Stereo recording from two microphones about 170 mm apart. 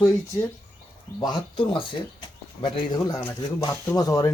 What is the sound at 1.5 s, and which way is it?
A man's voice, 30° left (ahead or behind).